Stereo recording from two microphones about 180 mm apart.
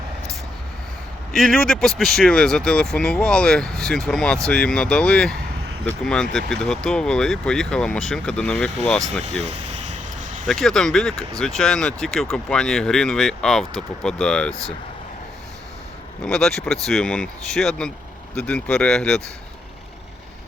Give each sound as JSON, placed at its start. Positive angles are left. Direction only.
{"t": 1.3, "sound": "speech", "side_deg": 0}
{"t": 9.2, "sound": "vehicle", "side_deg": -40}
{"t": 10.4, "sound": "speech", "side_deg": 0}
{"t": 16.2, "sound": "speech", "side_deg": 5}